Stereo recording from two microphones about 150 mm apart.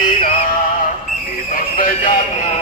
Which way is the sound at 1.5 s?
70° left (ahead or behind).